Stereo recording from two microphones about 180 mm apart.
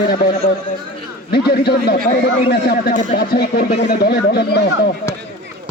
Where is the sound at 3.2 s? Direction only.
65° left (ahead or behind).